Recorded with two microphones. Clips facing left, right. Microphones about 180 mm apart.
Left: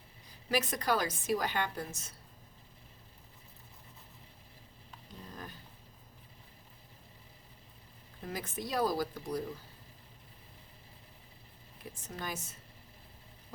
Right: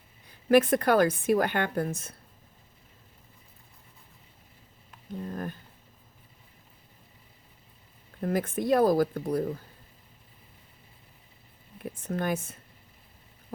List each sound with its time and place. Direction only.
0.3 s a woman's voice: 55° right (ahead or behind)
5.2 s a woman's voice: 55° right (ahead or behind)
8.2 s a woman's voice: 55° right (ahead or behind)
11.8 s a woman's voice: 55° right (ahead or behind)